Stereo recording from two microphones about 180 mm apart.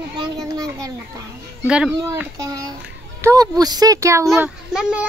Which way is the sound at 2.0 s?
15° right (ahead or behind).